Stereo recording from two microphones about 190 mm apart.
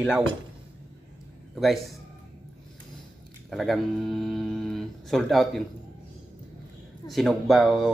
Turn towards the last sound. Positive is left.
turn(degrees=0)  # may be behind; listen again after turning